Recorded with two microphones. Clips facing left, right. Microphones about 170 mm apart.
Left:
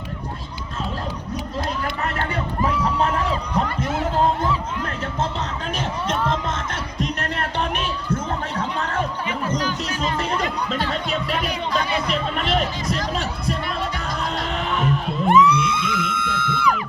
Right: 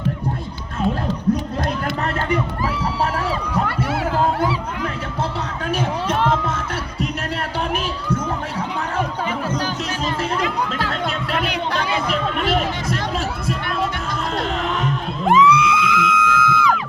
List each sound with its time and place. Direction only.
11.4 s a sound: 70° right (ahead or behind)
12.5 s music: 5° right (ahead or behind)
15.3 s music: 90° right